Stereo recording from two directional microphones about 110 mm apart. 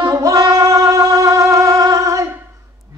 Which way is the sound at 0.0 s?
35° right (ahead or behind).